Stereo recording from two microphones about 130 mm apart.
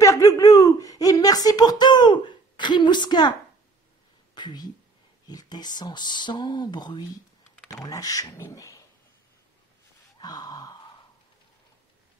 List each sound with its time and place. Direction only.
0.0 s a sound: 25° left (ahead or behind)
4.4 s speech: 35° left (ahead or behind)
10.1 s gasp: 30° left (ahead or behind)